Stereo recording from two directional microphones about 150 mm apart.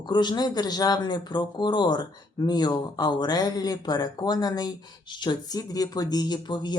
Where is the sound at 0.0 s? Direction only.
30° left (ahead or behind).